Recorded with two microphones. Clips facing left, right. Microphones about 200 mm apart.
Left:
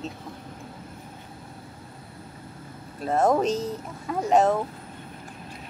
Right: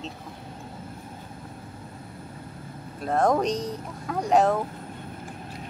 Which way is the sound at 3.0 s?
5° left (ahead or behind).